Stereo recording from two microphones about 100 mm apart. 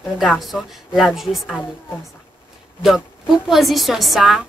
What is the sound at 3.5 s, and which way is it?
Speech, centre (ahead or behind).